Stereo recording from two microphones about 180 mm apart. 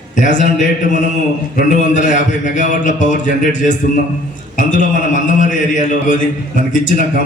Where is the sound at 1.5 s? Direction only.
45° left (ahead or behind).